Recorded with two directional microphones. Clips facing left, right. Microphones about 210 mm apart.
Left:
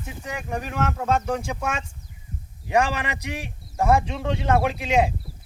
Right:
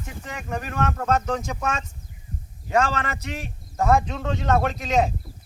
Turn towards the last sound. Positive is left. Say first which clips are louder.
# left 1 dB
turn(degrees=10)  # may be behind; listen again after turning